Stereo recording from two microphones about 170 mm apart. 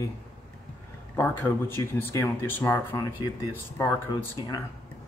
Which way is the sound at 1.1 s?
10° left (ahead or behind).